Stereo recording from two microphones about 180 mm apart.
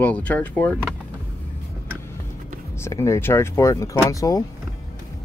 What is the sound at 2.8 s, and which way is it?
Speech, 15° left (ahead or behind).